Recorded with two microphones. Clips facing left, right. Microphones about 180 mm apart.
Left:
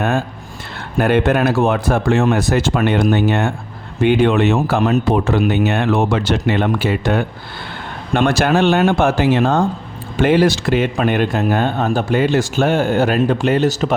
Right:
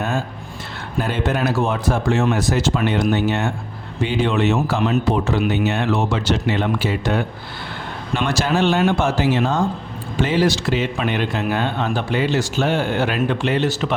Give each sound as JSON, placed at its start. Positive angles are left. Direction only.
{"t": 0.9, "sound": "speech", "side_deg": 60}